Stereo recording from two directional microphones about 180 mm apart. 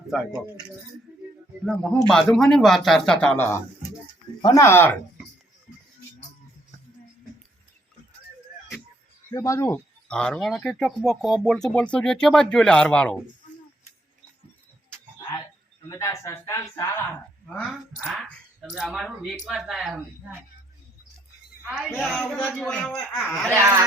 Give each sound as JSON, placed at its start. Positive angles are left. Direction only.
{"t": 0.1, "sound": "speech", "side_deg": 0}
{"t": 1.6, "sound": "speech", "side_deg": 5}
{"t": 9.3, "sound": "speech", "side_deg": 15}
{"t": 15.9, "sound": "speech", "side_deg": 15}
{"t": 17.7, "sound": "speech", "side_deg": -5}
{"t": 22.0, "sound": "speech", "side_deg": 0}
{"t": 23.5, "sound": "speech", "side_deg": -15}